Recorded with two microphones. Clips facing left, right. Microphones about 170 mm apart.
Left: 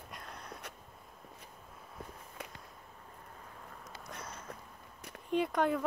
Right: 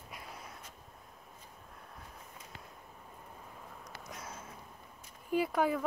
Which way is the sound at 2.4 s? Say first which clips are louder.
Left 7 dB; 65° left (ahead or behind).